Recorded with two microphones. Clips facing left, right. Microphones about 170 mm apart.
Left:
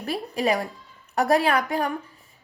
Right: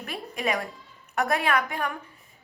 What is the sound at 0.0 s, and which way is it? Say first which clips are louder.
A woman's voice: left 5 dB; 35° left (ahead or behind).